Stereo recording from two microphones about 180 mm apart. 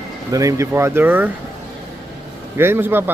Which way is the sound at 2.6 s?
10° right (ahead or behind).